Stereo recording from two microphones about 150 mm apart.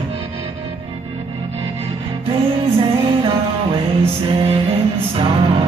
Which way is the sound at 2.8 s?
35° right (ahead or behind).